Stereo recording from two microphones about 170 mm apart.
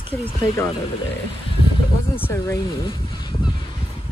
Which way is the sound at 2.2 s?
15° left (ahead or behind).